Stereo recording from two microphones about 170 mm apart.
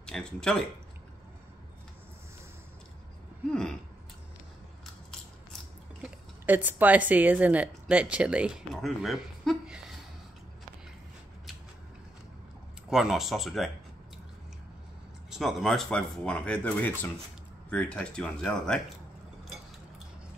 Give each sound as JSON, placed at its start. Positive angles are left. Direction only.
{"t": 0.0, "sound": "speech", "side_deg": 5}
{"t": 3.4, "sound": "a sound", "side_deg": 5}
{"t": 6.0, "sound": "speech", "side_deg": -10}
{"t": 12.9, "sound": "speech", "side_deg": 0}
{"t": 15.2, "sound": "speech", "side_deg": 0}